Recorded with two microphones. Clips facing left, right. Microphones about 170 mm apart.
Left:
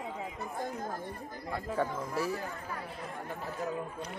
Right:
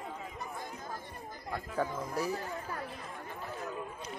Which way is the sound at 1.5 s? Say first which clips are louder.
Left 2 dB; centre (ahead or behind).